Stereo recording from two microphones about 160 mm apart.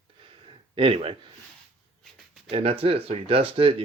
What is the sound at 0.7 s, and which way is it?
Speech, 35° right (ahead or behind).